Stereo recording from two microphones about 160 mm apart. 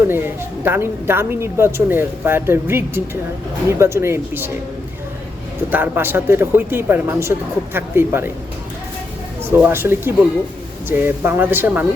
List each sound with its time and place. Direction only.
0.1 s a woman's voice: 15° right (ahead or behind)
5.7 s a woman's voice: 10° right (ahead or behind)
9.6 s a woman's voice: 10° right (ahead or behind)